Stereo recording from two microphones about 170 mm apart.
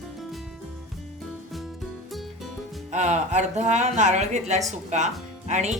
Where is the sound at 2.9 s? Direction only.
40° right (ahead or behind).